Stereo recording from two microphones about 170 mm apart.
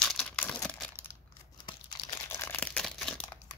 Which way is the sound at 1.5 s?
25° left (ahead or behind).